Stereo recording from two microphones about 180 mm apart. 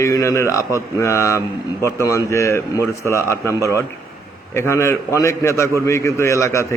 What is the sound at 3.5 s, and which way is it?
Speech, 15° right (ahead or behind).